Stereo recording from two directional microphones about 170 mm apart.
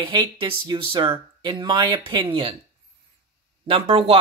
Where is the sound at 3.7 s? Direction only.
35° right (ahead or behind).